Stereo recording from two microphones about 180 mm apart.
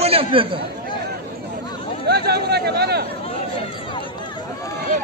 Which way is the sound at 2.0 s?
65° right (ahead or behind).